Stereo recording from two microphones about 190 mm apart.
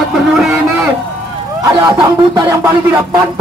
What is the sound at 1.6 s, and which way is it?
Speech, 15° right (ahead or behind).